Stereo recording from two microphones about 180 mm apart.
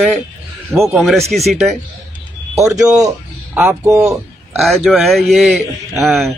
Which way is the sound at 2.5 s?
15° right (ahead or behind).